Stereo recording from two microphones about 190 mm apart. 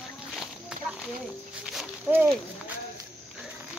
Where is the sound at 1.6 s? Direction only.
5° right (ahead or behind).